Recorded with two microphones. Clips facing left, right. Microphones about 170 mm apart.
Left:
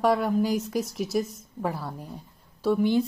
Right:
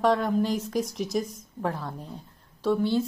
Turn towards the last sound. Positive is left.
turn(degrees=15)  # may be behind; listen again after turning